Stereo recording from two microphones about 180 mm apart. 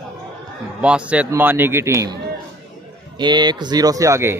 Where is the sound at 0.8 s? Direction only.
5° right (ahead or behind).